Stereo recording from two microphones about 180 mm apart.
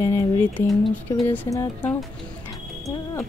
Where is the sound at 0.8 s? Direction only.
5° left (ahead or behind).